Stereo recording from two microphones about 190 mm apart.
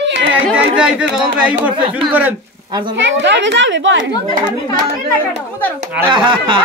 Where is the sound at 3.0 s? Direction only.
75° right (ahead or behind).